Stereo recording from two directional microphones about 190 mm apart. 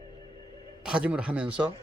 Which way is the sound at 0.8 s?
5° right (ahead or behind).